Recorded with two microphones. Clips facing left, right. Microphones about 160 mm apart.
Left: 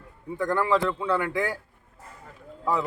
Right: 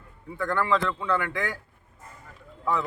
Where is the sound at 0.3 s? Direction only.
15° left (ahead or behind).